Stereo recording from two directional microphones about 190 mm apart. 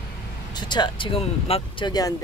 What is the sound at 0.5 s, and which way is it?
Speech, 25° left (ahead or behind).